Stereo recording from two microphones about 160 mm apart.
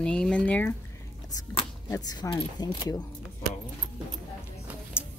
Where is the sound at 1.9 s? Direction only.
20° left (ahead or behind).